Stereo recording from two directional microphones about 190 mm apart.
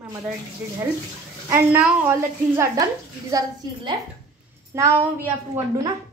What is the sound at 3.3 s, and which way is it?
A woman's voice, 25° right (ahead or behind).